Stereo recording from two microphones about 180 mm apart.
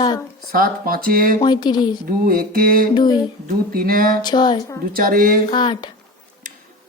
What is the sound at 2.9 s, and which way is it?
Speech, 25° left (ahead or behind).